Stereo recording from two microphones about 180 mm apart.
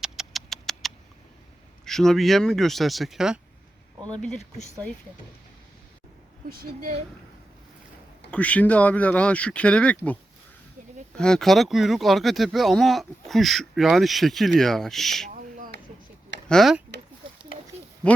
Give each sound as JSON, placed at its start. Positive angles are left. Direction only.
{"t": 0.0, "sound": "a sound", "side_deg": 0}
{"t": 1.8, "sound": "speech", "side_deg": 0}
{"t": 3.9, "sound": "a sound", "side_deg": -20}
{"t": 4.2, "sound": "speech", "side_deg": 0}
{"t": 6.5, "sound": "a woman's voice", "side_deg": -55}
{"t": 8.3, "sound": "speech", "side_deg": 5}
{"t": 11.2, "sound": "speech", "side_deg": 5}
{"t": 15.3, "sound": "owl", "side_deg": -45}
{"t": 16.5, "sound": "speech", "side_deg": 0}